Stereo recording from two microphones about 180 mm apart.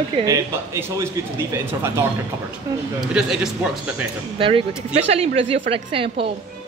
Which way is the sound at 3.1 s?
5° right (ahead or behind).